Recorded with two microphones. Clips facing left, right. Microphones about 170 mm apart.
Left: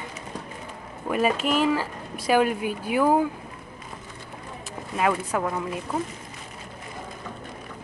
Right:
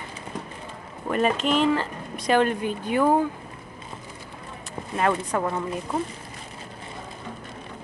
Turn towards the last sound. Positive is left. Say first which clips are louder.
# right 1 dB
turn(degrees=0)  # may be behind; listen again after turning